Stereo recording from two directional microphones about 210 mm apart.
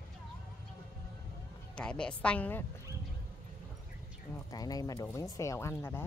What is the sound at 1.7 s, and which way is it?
Speech, 5° left (ahead or behind).